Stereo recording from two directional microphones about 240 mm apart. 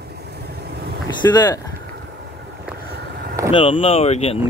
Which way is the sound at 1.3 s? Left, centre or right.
Centre.